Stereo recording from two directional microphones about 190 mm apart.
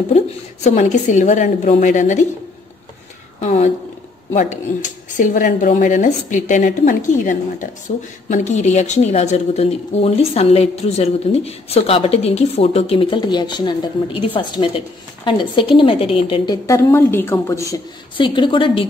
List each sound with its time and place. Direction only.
0.7 s speech: 40° left (ahead or behind)
3.3 s a sound: 35° left (ahead or behind)
4.3 s a woman's voice: 40° left (ahead or behind)
16.6 s a woman's voice: 15° left (ahead or behind)